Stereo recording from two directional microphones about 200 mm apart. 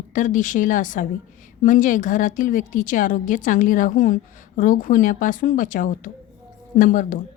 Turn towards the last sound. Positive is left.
turn(degrees=40)  # may be behind; listen again after turning